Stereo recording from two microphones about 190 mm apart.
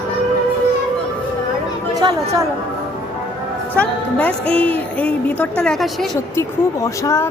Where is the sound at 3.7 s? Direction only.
5° left (ahead or behind).